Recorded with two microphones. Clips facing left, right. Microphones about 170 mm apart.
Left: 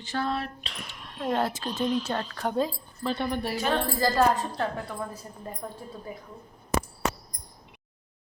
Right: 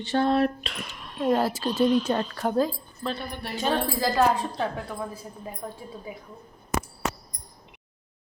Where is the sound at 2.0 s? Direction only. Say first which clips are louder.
Right 4 dB; 10° right (ahead or behind); by 3.5 s 10° left (ahead or behind).